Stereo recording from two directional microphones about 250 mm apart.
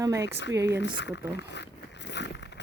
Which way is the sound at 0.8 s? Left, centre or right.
Left.